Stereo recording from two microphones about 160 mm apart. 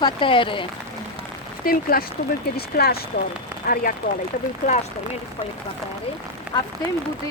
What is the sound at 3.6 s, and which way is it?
Speech, 60° left (ahead or behind).